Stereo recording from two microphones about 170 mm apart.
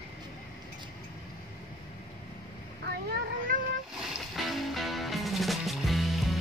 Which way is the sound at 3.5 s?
55° right (ahead or behind).